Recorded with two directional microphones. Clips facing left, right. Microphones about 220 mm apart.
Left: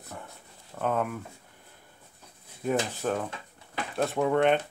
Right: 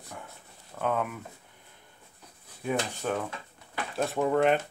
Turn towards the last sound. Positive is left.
turn(degrees=0)  # may be behind; listen again after turning